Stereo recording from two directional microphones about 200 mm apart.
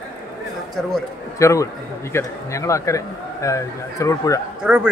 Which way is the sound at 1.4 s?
15° left (ahead or behind).